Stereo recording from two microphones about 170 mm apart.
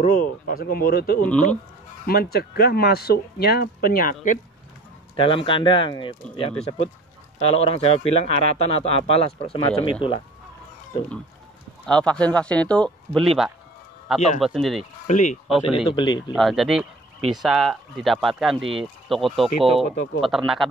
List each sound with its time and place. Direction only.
0.0 s speech: 55° left (ahead or behind)
5.1 s speech: 30° left (ahead or behind)
11.8 s speech: 5° left (ahead or behind)
14.4 s speech: centre (ahead or behind)
15.0 s speech: 45° left (ahead or behind)
15.4 s speech: centre (ahead or behind)
15.9 s speech: 25° left (ahead or behind)
16.3 s speech: centre (ahead or behind)